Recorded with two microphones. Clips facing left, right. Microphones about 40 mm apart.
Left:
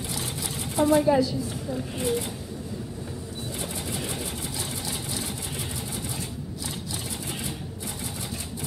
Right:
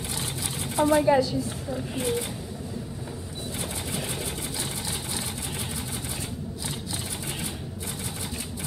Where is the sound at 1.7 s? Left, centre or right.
Centre.